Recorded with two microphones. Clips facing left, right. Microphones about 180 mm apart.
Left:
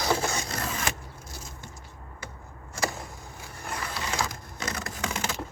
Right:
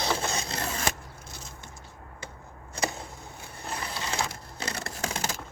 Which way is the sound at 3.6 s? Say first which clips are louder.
Left 1 dB; 25° right (ahead or behind).